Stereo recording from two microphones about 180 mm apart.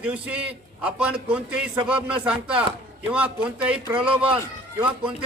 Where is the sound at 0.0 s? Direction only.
5° right (ahead or behind).